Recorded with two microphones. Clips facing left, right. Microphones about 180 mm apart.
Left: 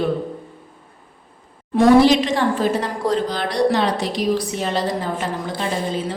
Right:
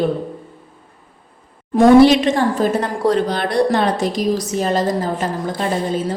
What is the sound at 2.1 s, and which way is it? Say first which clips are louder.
A woman's voice: right 2 dB; 60° right (ahead or behind).